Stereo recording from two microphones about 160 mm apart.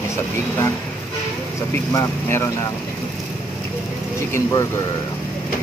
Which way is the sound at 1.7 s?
15° left (ahead or behind).